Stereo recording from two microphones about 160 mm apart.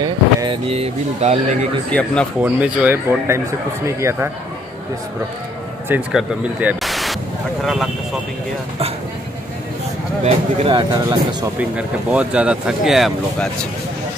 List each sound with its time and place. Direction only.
0.0 s speech: 30° right (ahead or behind); by 1.7 s 45° right (ahead or behind)
1.9 s speech: 10° left (ahead or behind)
2.4 s speech: 10° right (ahead or behind)
5.9 s speech: 10° right (ahead or behind)
10.2 s speech: 35° right (ahead or behind)
11.7 s speech: 5° right (ahead or behind)